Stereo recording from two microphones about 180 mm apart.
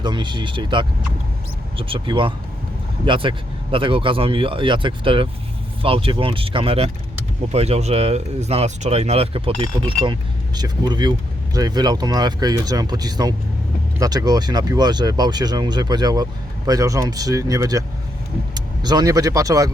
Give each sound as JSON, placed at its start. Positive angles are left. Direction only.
{"t": 0.0, "sound": "speech", "side_deg": -25}